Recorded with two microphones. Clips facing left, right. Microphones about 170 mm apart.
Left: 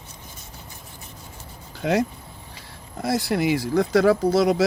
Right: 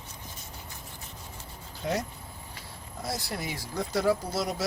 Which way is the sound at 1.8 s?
75° left (ahead or behind).